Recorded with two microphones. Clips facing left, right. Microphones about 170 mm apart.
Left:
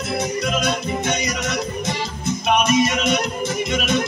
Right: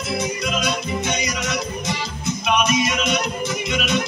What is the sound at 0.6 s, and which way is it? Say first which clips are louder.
Music: left 1 dB; 55° left (ahead or behind).